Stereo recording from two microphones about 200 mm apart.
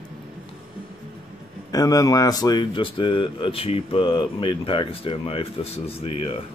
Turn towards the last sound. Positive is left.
turn(degrees=30)  # may be behind; listen again after turning